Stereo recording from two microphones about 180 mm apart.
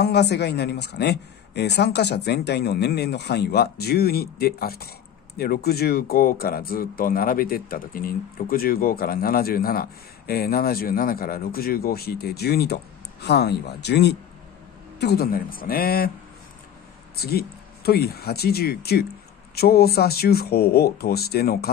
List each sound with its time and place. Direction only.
0.0 s speech: 65° left (ahead or behind)
17.1 s speech: 60° left (ahead or behind)